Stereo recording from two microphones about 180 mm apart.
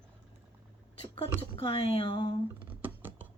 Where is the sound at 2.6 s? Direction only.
10° right (ahead or behind).